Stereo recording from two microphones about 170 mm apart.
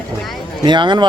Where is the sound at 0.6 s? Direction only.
25° right (ahead or behind).